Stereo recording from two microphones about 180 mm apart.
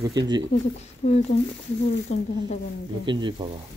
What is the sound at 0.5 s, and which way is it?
Speech, 35° left (ahead or behind).